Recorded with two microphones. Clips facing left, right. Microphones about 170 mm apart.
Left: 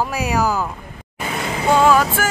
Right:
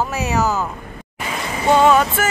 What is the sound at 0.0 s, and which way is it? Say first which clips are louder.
Speech: even; 10° left (ahead or behind).